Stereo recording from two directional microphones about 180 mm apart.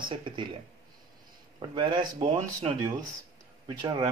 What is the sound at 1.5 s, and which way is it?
Speech, 25° right (ahead or behind).